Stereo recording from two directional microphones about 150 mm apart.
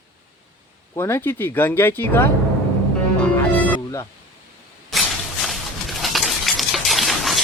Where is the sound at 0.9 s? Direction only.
15° left (ahead or behind).